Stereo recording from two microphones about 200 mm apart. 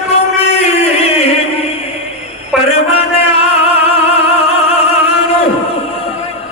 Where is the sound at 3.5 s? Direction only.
30° left (ahead or behind).